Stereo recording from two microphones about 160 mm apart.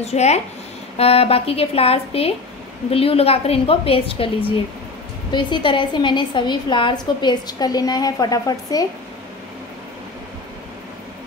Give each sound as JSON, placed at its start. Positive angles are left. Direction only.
{"t": 0.0, "sound": "a woman's voice", "side_deg": 45}